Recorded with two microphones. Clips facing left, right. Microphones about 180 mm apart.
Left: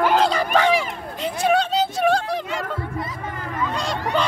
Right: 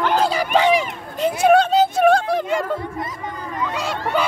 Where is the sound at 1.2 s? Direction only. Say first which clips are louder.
Right 6 dB; 50° right (ahead or behind).